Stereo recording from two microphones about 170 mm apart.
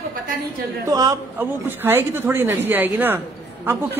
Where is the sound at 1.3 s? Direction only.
10° right (ahead or behind).